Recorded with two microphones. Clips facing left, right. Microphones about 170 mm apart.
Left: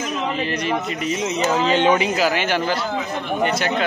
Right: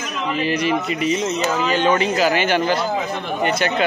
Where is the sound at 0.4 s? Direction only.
5° right (ahead or behind).